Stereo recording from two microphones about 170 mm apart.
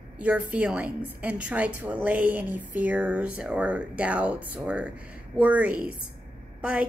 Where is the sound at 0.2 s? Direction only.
10° right (ahead or behind).